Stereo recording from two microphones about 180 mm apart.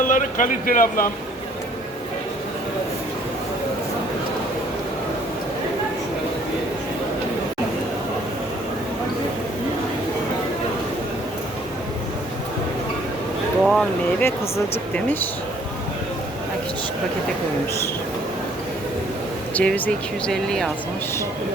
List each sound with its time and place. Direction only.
0.1 s speech: 45° left (ahead or behind)
13.7 s speech: centre (ahead or behind)
19.5 s speech: 10° left (ahead or behind)